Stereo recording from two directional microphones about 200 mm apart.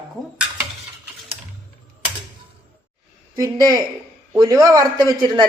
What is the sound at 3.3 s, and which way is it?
A man's voice, 20° right (ahead or behind).